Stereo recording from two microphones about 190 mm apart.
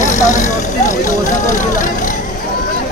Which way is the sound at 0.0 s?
40° left (ahead or behind).